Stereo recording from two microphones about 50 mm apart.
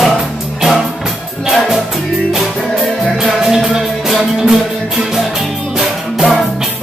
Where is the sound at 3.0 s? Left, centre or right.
Centre.